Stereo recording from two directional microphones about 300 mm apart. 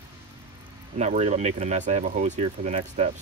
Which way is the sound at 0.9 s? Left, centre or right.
Right.